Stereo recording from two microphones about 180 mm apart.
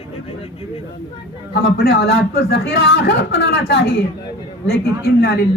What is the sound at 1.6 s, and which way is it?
A man's voice, 60° left (ahead or behind).